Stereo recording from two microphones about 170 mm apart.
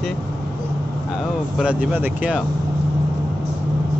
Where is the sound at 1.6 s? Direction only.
5° right (ahead or behind).